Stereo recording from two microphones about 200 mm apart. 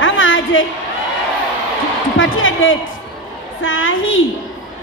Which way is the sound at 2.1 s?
75° left (ahead or behind).